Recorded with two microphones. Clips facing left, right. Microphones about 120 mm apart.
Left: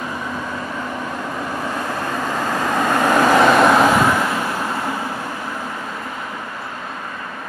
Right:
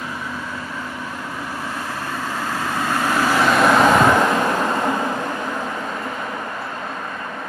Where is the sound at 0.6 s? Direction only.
45° left (ahead or behind).